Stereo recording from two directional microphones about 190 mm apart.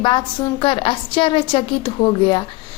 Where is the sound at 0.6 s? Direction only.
25° left (ahead or behind).